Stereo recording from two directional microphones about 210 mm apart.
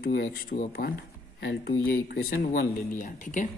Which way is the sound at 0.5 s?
30° left (ahead or behind).